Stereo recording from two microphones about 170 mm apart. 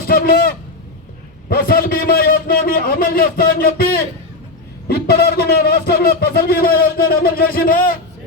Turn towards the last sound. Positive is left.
turn(degrees=60)  # may be behind; listen again after turning